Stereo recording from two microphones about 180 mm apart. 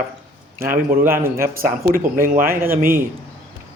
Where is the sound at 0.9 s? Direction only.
10° right (ahead or behind).